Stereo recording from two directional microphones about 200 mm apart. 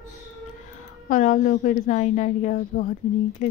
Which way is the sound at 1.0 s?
40° left (ahead or behind).